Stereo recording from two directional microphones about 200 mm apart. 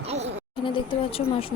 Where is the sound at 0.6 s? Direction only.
25° left (ahead or behind).